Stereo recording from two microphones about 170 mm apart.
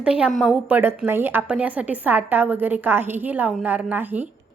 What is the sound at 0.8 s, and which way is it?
A woman's voice, 15° right (ahead or behind).